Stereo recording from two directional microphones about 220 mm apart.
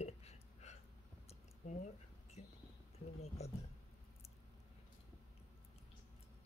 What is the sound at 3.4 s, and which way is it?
Speech, 30° left (ahead or behind).